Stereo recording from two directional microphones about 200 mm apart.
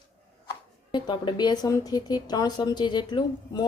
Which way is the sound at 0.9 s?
20° left (ahead or behind).